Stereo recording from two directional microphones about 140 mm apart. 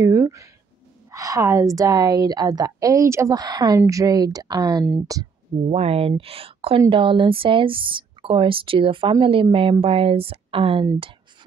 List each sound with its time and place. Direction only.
0.0 s a woman's voice: 20° right (ahead or behind)
5.7 s speech: 45° right (ahead or behind)